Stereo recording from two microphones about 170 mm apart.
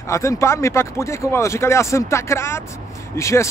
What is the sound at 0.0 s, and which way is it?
Speech, 15° left (ahead or behind).